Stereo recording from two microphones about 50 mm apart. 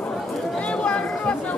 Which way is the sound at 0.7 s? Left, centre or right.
Left.